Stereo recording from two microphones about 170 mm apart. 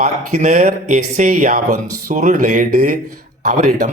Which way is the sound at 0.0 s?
45° right (ahead or behind).